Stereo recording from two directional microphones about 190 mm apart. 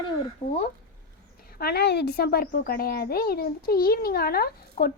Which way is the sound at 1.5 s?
55° left (ahead or behind).